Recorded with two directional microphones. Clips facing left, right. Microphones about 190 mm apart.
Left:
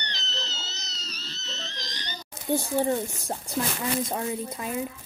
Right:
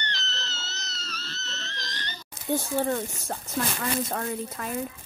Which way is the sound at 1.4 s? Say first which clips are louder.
Left 1 dB; centre (ahead or behind).